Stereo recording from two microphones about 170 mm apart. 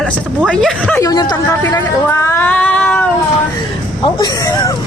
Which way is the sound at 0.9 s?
20° left (ahead or behind).